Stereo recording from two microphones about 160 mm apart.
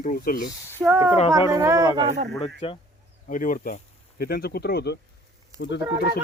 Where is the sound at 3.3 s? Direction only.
55° left (ahead or behind).